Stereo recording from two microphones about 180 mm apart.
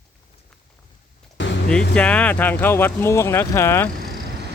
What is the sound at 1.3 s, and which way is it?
Vehicle, 90° left.